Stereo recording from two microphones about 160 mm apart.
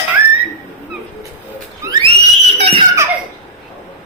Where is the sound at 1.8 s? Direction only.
25° right (ahead or behind).